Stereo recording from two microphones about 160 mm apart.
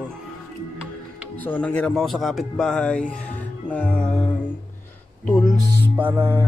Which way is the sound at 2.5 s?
5° left (ahead or behind).